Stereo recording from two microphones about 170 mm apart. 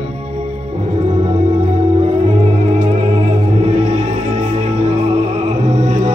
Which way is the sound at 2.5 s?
40° right (ahead or behind).